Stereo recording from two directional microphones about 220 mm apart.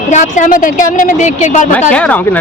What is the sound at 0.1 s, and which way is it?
Speech, 35° left (ahead or behind).